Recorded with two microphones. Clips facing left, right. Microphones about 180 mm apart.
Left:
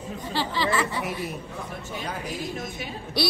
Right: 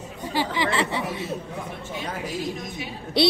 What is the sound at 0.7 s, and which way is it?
Speech, 25° right (ahead or behind).